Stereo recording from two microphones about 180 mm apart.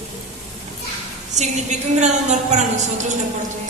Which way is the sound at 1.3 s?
40° right (ahead or behind).